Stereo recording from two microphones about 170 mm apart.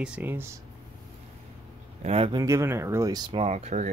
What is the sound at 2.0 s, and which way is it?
Speech, 35° right (ahead or behind).